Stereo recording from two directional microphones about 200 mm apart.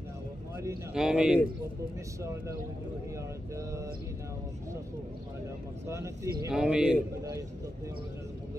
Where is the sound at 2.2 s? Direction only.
15° right (ahead or behind).